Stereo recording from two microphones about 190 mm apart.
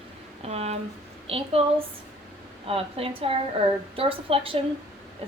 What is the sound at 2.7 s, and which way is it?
A woman's voice, 30° right (ahead or behind).